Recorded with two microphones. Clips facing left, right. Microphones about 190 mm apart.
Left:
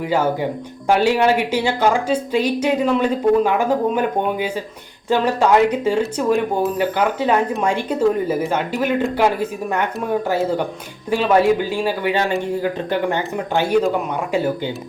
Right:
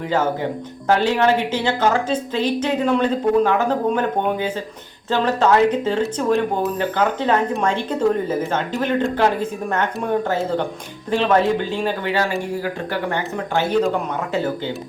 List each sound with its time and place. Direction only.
0.9 s a woman's voice: 15° left (ahead or behind)
12.1 s speech: 20° left (ahead or behind)